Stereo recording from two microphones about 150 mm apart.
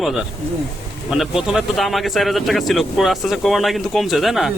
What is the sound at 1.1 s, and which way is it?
Speech, centre (ahead or behind).